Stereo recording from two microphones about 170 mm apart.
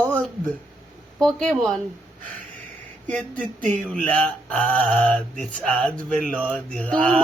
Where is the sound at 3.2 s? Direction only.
50° right (ahead or behind).